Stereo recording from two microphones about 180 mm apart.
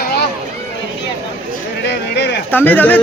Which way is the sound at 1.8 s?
70° left (ahead or behind).